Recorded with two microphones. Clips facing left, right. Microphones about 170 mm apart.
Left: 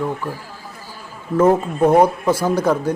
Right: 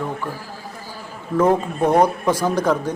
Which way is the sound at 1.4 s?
10° left (ahead or behind).